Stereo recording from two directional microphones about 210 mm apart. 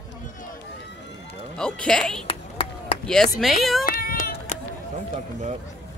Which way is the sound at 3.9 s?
45° left (ahead or behind).